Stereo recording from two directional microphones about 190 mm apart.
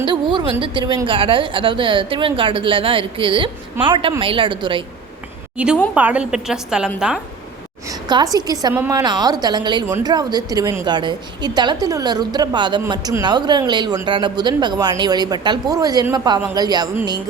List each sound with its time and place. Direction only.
0.6 s speech: 25° right (ahead or behind)
5.5 s a woman's voice: 5° right (ahead or behind)
7.9 s a woman's voice: 20° right (ahead or behind)